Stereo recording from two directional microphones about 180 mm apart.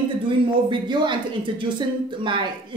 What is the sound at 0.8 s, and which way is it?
Speech, 25° right (ahead or behind).